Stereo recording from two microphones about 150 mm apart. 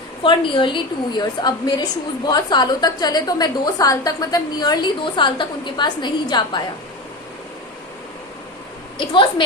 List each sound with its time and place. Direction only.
0.2 s a woman's voice: 35° left (ahead or behind)
9.0 s a woman's voice: 30° left (ahead or behind)